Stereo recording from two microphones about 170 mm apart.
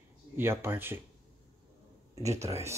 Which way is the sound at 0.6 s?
15° right (ahead or behind).